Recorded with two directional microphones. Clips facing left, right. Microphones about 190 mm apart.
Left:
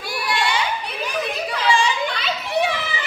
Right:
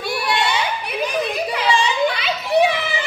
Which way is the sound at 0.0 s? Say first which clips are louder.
Right 4 dB; 25° right (ahead or behind).